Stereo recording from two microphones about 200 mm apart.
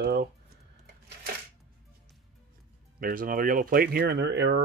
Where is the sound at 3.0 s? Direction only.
45° right (ahead or behind).